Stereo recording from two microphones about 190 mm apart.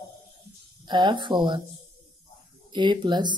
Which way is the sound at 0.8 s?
25° right (ahead or behind).